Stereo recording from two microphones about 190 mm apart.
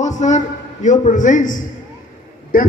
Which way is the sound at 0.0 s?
40° left (ahead or behind).